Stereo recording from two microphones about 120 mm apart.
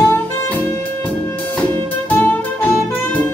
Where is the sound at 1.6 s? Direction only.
15° left (ahead or behind).